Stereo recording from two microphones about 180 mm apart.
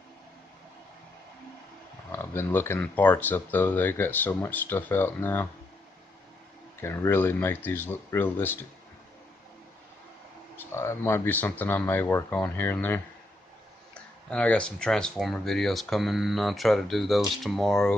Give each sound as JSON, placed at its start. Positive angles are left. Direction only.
{"t": 2.1, "sound": "speech", "side_deg": 10}
{"t": 6.8, "sound": "speech", "side_deg": 10}
{"t": 10.6, "sound": "speech", "side_deg": 15}
{"t": 14.3, "sound": "speech", "side_deg": 5}